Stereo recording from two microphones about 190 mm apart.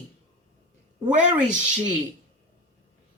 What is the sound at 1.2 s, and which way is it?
Speech, 40° right (ahead or behind).